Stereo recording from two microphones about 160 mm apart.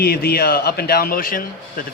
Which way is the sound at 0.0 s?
75° left (ahead or behind).